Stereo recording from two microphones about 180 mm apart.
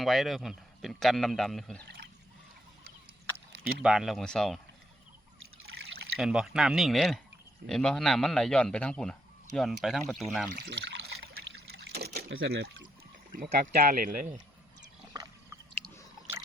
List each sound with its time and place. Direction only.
0.0 s speech: centre (ahead or behind)
3.8 s speech: centre (ahead or behind)
6.1 s speech: centre (ahead or behind)
10.5 s trickle: 70° right (ahead or behind)
13.3 s speech: 55° right (ahead or behind)